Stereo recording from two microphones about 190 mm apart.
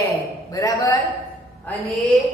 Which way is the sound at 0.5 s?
20° left (ahead or behind).